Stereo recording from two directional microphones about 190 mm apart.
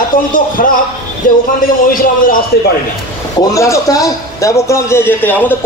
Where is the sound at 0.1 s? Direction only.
45° left (ahead or behind).